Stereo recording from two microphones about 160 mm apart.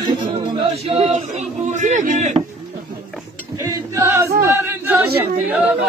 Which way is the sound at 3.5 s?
20° right (ahead or behind).